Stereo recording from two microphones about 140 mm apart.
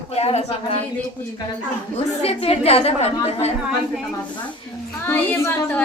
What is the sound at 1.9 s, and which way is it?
A woman's voice, 45° left (ahead or behind).